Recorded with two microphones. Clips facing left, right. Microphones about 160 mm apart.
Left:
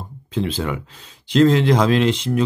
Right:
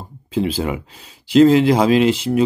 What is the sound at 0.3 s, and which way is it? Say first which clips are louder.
Speech: right 3 dB; 10° right (ahead or behind).